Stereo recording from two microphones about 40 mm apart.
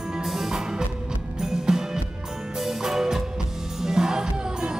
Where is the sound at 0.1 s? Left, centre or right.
Centre.